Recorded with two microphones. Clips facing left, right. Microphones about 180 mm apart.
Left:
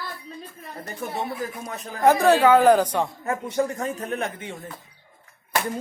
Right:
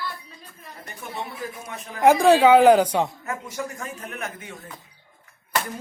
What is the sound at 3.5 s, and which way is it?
A man's voice, 35° left (ahead or behind).